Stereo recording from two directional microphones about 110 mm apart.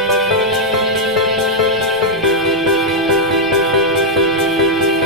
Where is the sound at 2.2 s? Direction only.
Centre (ahead or behind).